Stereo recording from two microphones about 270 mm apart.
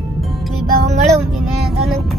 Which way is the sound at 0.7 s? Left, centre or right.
Right.